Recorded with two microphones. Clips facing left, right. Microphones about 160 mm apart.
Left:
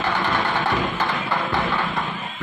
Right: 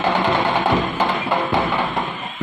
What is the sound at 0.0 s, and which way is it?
Music, 15° right (ahead or behind).